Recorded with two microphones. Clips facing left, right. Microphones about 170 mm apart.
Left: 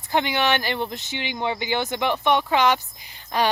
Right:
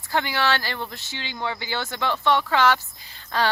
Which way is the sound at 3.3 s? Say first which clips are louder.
Left 2 dB; 15° left (ahead or behind).